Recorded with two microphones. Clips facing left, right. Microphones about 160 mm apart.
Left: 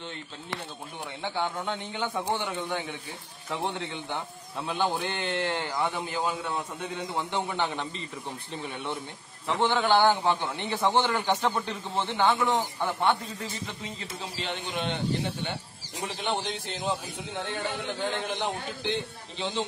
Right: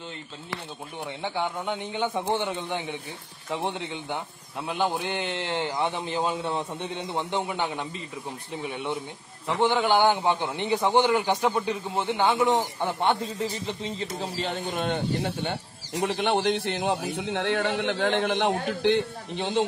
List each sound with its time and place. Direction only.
1.2 s a man's voice: 15° right (ahead or behind)
14.1 s speech: 40° right (ahead or behind)
15.2 s speech: 60° right (ahead or behind)